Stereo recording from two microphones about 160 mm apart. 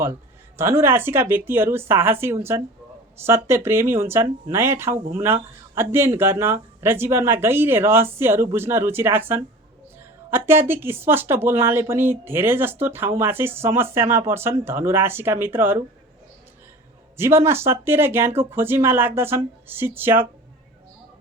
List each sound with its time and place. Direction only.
0.5 s speech: 15° right (ahead or behind)
17.2 s speech: 15° right (ahead or behind)